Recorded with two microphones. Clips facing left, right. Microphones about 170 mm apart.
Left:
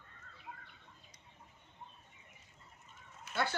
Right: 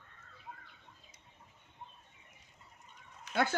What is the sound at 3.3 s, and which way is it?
Speech, 50° right (ahead or behind).